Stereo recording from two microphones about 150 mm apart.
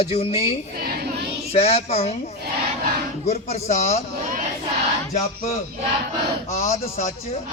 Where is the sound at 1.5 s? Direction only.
45° left (ahead or behind).